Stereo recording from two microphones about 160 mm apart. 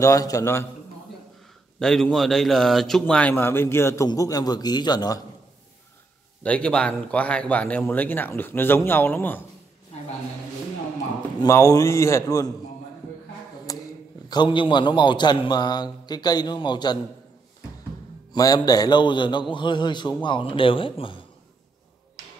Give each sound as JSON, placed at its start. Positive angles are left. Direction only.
{"t": 0.0, "sound": "a man's voice", "side_deg": 20}
{"t": 1.8, "sound": "a man's voice", "side_deg": 5}
{"t": 6.4, "sound": "a man's voice", "side_deg": 5}
{"t": 11.4, "sound": "a man's voice", "side_deg": 20}
{"t": 13.7, "sound": "a sound", "side_deg": 20}
{"t": 14.3, "sound": "a man's voice", "side_deg": 30}
{"t": 18.3, "sound": "a man's voice", "side_deg": 25}